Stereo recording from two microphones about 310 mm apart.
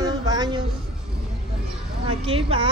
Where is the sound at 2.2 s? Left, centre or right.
Centre.